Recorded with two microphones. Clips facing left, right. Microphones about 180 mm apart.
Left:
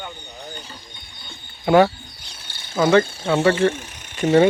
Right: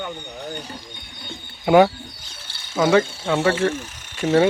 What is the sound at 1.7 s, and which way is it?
Speech, 10° right (ahead or behind).